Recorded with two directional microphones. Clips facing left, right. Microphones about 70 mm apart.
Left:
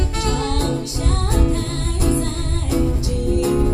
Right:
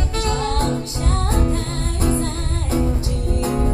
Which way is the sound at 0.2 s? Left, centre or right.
Right.